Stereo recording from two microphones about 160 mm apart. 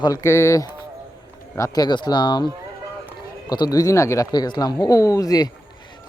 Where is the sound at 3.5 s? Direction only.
25° left (ahead or behind).